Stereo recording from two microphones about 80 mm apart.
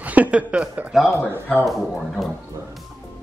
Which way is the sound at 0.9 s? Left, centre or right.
Centre.